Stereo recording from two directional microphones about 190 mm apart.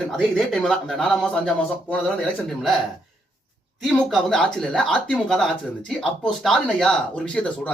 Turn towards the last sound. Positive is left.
turn(degrees=5)  # may be behind; listen again after turning